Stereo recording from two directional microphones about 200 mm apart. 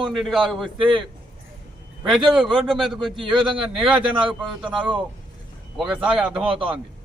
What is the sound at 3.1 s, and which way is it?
Speech, 25° right (ahead or behind).